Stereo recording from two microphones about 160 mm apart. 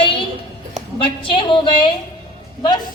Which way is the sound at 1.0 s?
30° left (ahead or behind).